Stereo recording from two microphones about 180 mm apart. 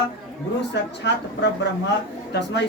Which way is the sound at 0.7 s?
70° left (ahead or behind).